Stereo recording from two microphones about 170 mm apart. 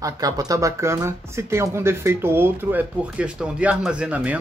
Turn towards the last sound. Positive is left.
turn(degrees=-10)  # may be behind; listen again after turning